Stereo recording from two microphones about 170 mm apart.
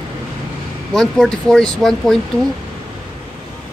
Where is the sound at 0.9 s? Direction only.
5° left (ahead or behind).